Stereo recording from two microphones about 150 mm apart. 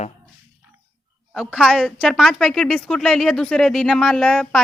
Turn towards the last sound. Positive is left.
turn(degrees=0)  # may be behind; listen again after turning